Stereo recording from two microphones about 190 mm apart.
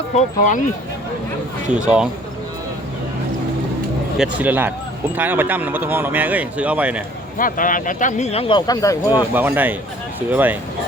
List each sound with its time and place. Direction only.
0.2 s speech: 40° left (ahead or behind)
1.7 s speech: 5° right (ahead or behind)
4.2 s speech: 10° right (ahead or behind)
7.3 s speech: 45° left (ahead or behind); by 9.2 s 20° left (ahead or behind)
9.3 s speech: 10° right (ahead or behind)